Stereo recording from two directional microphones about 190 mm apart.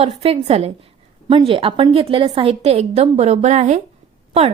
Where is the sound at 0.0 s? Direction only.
30° right (ahead or behind).